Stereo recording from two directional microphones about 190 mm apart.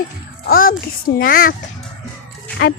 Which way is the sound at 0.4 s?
50° left (ahead or behind).